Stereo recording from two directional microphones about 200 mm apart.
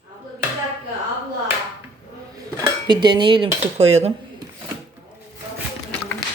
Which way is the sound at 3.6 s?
35° right (ahead or behind).